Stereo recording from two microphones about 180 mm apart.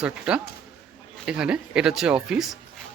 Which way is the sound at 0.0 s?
5° right (ahead or behind).